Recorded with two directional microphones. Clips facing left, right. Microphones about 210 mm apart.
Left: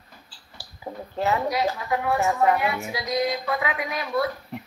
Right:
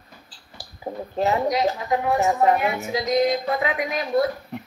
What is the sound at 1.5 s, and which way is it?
Speech, 20° right (ahead or behind).